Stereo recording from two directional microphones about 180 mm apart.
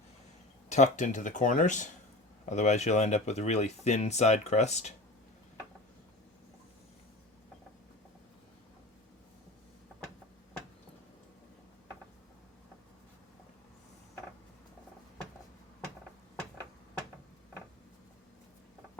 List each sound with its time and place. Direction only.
0.7 s speech: 40° left (ahead or behind)